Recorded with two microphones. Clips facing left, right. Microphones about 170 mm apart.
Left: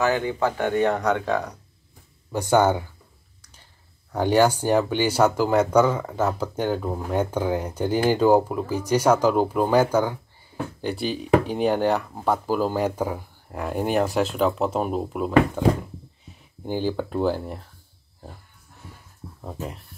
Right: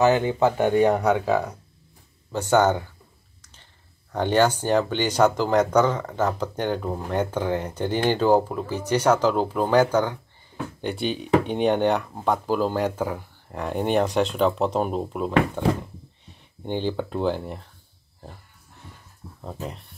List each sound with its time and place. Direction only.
0.0 s speech: 20° right (ahead or behind); by 1.6 s 5° right (ahead or behind)
2.3 s speech: 10° left (ahead or behind)
4.1 s speech: 10° left (ahead or behind)
18.8 s a sound: 10° left (ahead or behind)
19.4 s speech: 5° left (ahead or behind)